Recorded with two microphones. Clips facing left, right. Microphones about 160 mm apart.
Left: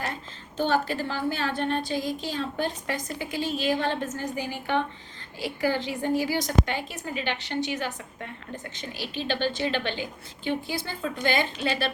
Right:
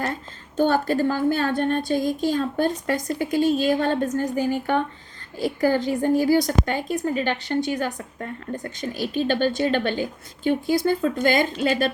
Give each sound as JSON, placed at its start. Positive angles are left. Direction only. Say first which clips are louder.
{"t": 0.5, "sound": "a woman's voice", "louder": "right 5 dB", "side_deg": -45}